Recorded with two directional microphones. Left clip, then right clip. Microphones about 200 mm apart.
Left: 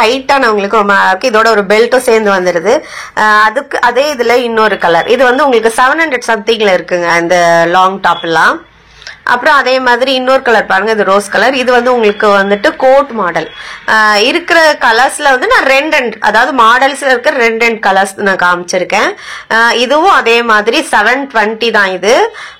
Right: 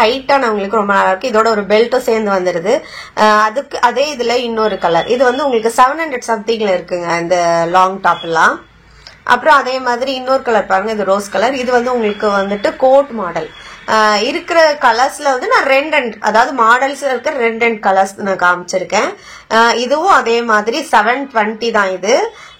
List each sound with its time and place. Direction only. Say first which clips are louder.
0.0 s speech: left 3 dB; 15° left (ahead or behind)
13.8 s speech: left 4 dB; 20° left (ahead or behind)